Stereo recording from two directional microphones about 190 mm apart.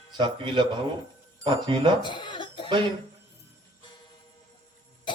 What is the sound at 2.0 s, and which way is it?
Cough, 25° left (ahead or behind).